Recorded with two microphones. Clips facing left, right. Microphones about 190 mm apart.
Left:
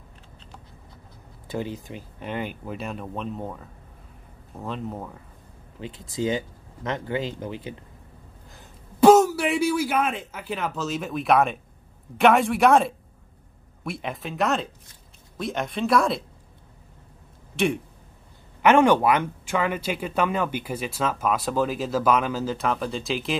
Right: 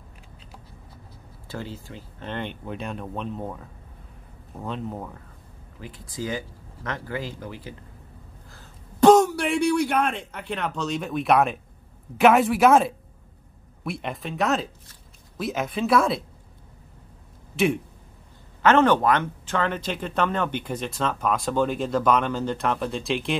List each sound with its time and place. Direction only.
1.5 s speech: 15° left (ahead or behind); by 5.2 s centre (ahead or behind)
5.8 s speech: 20° left (ahead or behind)
9.0 s speech: 5° left (ahead or behind)
18.6 s speech: 15° left (ahead or behind)